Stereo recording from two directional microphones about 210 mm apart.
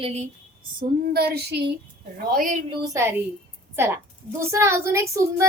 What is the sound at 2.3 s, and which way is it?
Speech, 40° right (ahead or behind).